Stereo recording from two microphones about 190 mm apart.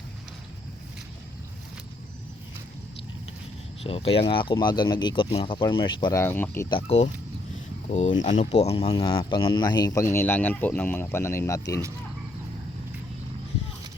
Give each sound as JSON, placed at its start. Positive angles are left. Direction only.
{"t": 3.8, "sound": "speech", "side_deg": 30}
{"t": 6.7, "sound": "speech", "side_deg": 30}